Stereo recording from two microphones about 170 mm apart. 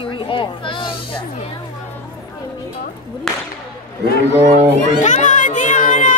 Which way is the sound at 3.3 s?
Centre (ahead or behind).